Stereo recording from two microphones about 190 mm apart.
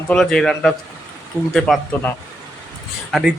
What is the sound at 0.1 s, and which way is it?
A man's voice, 5° left (ahead or behind).